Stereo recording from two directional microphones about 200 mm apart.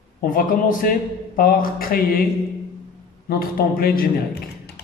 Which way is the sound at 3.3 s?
50° left (ahead or behind).